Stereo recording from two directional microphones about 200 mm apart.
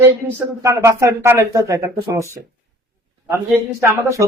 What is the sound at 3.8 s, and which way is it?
Speech, 15° right (ahead or behind).